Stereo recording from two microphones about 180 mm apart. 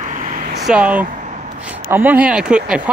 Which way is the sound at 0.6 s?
5° right (ahead or behind).